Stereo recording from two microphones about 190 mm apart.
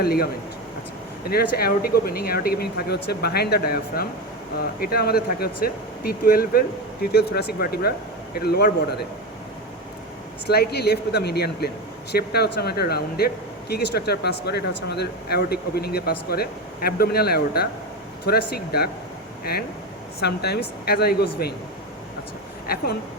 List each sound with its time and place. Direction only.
0.0 s speech: 55° left (ahead or behind)
1.3 s speech: 55° left (ahead or behind)
10.4 s speech: 60° left (ahead or behind)
20.2 s speech: 60° left (ahead or behind)
22.6 s speech: 55° left (ahead or behind)